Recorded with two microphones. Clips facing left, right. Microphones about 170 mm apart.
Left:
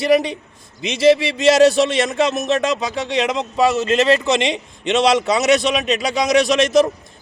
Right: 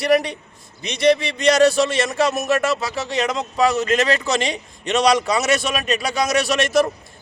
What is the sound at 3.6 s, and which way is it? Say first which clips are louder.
Speech: left 2 dB; 25° left (ahead or behind).